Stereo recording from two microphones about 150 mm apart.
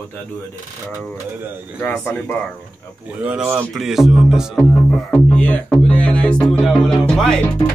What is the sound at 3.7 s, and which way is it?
Music, centre (ahead or behind).